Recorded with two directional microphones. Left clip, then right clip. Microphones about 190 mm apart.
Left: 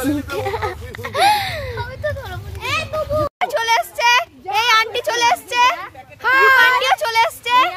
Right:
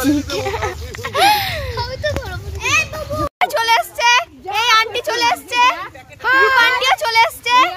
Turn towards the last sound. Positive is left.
turn(degrees=0)  # may be behind; listen again after turning